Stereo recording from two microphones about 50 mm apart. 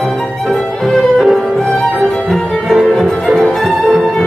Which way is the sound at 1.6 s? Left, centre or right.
Left.